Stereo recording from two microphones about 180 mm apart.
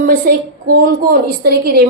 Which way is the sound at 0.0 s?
55° right (ahead or behind).